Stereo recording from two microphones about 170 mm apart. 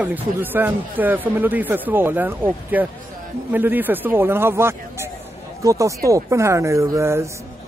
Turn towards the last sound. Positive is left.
turn(degrees=-15)  # may be behind; listen again after turning